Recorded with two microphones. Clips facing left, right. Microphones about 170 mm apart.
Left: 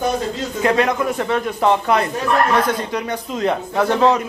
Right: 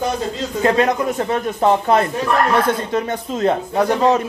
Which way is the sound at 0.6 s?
30° right (ahead or behind).